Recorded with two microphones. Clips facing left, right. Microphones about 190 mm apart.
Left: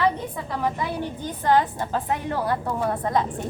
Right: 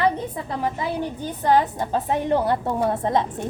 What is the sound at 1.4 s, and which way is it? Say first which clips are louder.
A woman's voice: right 1 dB; 15° right (ahead or behind).